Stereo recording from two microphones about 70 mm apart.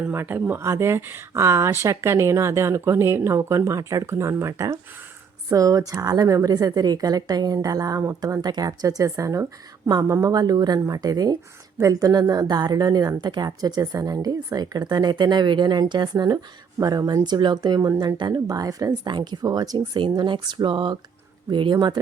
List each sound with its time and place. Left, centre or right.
0.1 s speech: right
0.6 s a woman's voice: right
8.4 s a woman's voice: right
9.0 s a woman's voice: right
10.8 s a woman's voice: right
11.8 s speech: right
16.8 s a woman's voice: right
17.2 s speech: right